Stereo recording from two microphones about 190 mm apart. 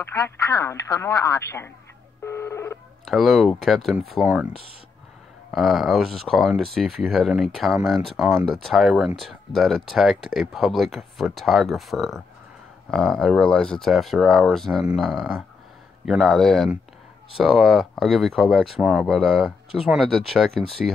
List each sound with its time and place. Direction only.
0.0 s speech: 15° left (ahead or behind)
2.2 s telephone dialing: 15° left (ahead or behind)
3.1 s speech: centre (ahead or behind)
5.5 s speech: centre (ahead or behind)